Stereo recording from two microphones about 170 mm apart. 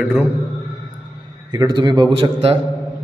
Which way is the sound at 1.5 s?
25° right (ahead or behind).